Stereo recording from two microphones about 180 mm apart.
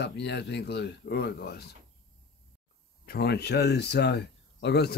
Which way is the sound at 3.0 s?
60° left (ahead or behind).